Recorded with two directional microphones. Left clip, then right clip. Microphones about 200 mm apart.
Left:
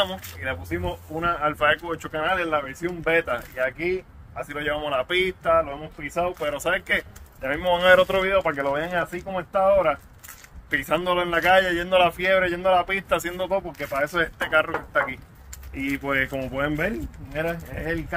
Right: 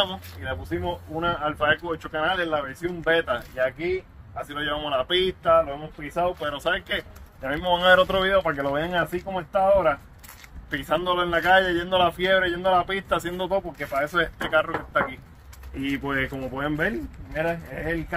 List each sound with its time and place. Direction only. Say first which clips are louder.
0.0 s speech: left 1 dB; 30° left (ahead or behind)
2.4 s a man's voice: left 1 dB; 10° left (ahead or behind)
16.1 s speech: left 5 dB; 30° left (ahead or behind)
16.7 s a man's voice: right 1 dB; 10° left (ahead or behind)